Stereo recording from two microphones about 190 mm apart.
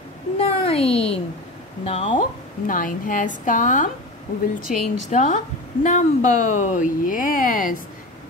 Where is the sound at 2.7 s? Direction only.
45° left (ahead or behind).